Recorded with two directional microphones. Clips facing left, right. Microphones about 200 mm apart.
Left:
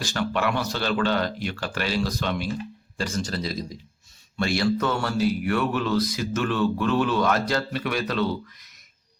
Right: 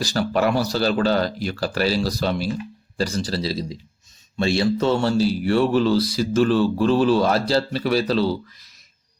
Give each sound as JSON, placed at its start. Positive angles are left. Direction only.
{"t": 0.0, "sound": "speech", "side_deg": -35}